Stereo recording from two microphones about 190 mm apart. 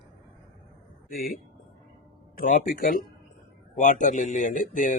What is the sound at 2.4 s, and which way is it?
Speech, 45° left (ahead or behind).